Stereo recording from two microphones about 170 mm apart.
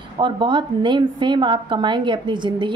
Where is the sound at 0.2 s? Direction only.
30° right (ahead or behind).